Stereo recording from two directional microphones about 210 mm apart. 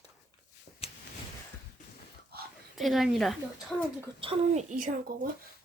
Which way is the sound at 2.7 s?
Centre (ahead or behind).